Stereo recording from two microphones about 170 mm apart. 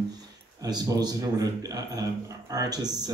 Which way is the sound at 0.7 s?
25° right (ahead or behind).